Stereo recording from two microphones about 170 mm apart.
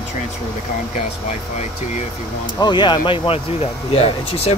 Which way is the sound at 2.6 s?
25° left (ahead or behind).